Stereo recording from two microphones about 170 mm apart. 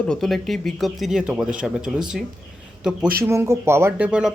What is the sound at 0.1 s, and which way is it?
Speech, centre (ahead or behind).